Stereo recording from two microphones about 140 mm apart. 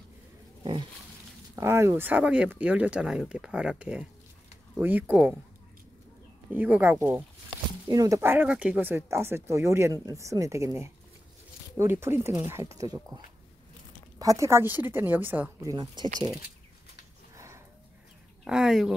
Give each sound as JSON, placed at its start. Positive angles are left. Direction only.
{"t": 1.5, "sound": "speech", "side_deg": -20}
{"t": 6.5, "sound": "speech", "side_deg": -15}
{"t": 15.6, "sound": "speech", "side_deg": -30}
{"t": 18.4, "sound": "speech", "side_deg": -5}